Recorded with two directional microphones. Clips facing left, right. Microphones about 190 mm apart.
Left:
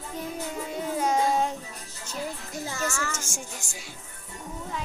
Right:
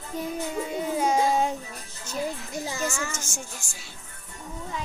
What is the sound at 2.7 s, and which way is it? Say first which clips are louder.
Child singing: even; 15° right (ahead or behind).